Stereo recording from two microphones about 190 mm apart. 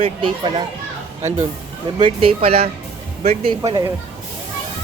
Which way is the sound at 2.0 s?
30° right (ahead or behind).